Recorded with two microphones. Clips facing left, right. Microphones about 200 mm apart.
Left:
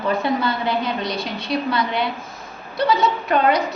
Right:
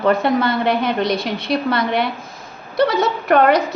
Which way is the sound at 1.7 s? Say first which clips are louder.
Right 3 dB; 60° right (ahead or behind).